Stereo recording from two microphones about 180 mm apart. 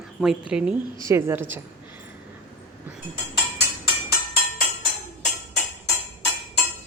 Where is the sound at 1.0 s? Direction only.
15° right (ahead or behind).